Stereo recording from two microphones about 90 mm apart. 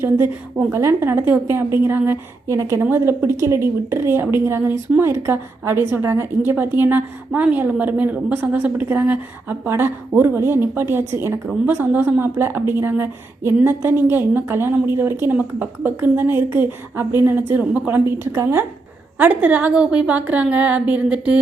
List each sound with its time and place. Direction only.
0.7 s a woman's voice: 30° right (ahead or behind)
19.2 s a woman's voice: 20° right (ahead or behind)